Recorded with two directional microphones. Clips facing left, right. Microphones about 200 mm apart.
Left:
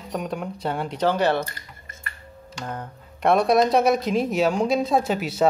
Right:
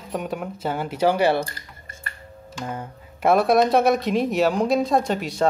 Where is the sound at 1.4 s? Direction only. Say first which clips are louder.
Right 1 dB; 30° right (ahead or behind).